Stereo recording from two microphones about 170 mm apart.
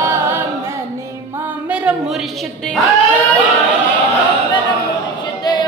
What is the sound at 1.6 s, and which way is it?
Music, 5° right (ahead or behind).